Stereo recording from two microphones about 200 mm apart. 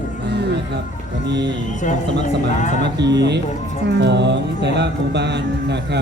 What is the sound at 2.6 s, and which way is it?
Music, 40° left (ahead or behind).